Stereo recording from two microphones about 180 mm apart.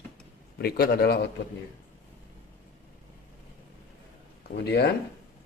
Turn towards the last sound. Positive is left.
turn(degrees=70)  # may be behind; listen again after turning